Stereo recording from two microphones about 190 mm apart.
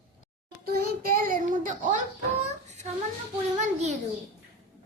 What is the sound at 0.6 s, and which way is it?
Child singing, 55° right (ahead or behind).